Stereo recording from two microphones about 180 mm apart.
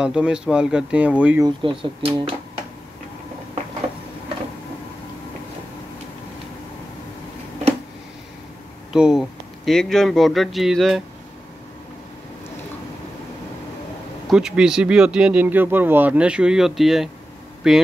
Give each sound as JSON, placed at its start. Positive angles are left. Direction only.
{"t": 0.0, "sound": "speech", "side_deg": -5}
{"t": 1.4, "sound": "speech", "side_deg": -30}
{"t": 8.9, "sound": "speech", "side_deg": -5}
{"t": 14.3, "sound": "speech", "side_deg": -5}